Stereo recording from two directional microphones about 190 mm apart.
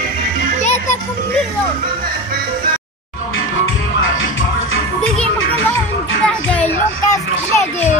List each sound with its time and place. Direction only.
0.6 s music: 35° left (ahead or behind)
6.2 s music: 5° left (ahead or behind)
7.1 s children playing: 15° left (ahead or behind)